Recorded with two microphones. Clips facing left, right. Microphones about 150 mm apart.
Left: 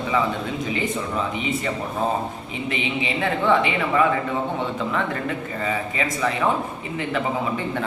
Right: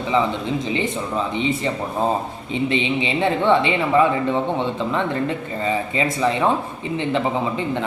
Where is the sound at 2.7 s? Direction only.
25° right (ahead or behind).